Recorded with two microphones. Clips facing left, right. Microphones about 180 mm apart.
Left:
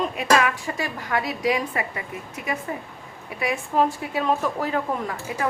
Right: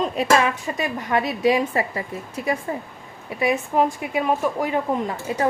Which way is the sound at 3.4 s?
20° right (ahead or behind).